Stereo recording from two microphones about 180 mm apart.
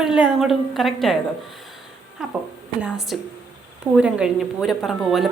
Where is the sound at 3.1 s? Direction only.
Centre (ahead or behind).